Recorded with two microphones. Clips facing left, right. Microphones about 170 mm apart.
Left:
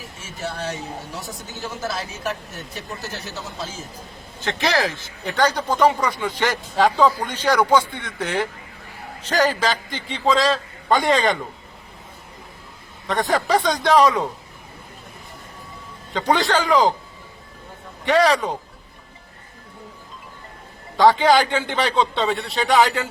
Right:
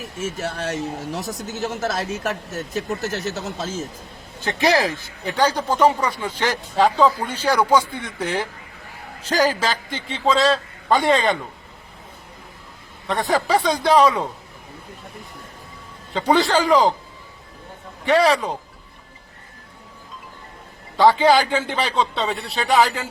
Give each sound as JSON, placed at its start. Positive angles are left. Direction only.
{"t": 0.4, "sound": "speech", "side_deg": -45}
{"t": 3.2, "sound": "speech", "side_deg": -45}
{"t": 4.4, "sound": "a man's voice", "side_deg": -10}
{"t": 13.1, "sound": "a man's voice", "side_deg": 0}
{"t": 16.1, "sound": "a man's voice", "side_deg": -5}
{"t": 18.0, "sound": "a man's voice", "side_deg": 0}
{"t": 21.0, "sound": "a man's voice", "side_deg": -5}